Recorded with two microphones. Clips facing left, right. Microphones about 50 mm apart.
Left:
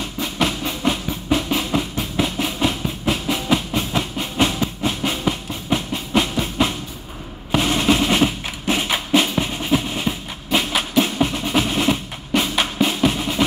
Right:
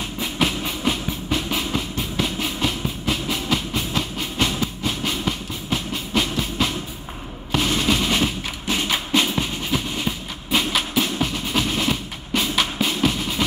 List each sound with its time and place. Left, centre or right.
0.2 s train: centre
3.7 s train: left
7.5 s music: centre
13.1 s drum: left